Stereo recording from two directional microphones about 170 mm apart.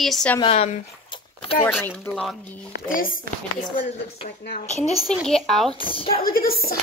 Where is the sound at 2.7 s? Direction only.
55° left (ahead or behind).